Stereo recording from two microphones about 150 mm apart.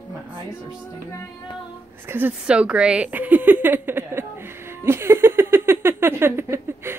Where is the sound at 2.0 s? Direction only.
15° right (ahead or behind).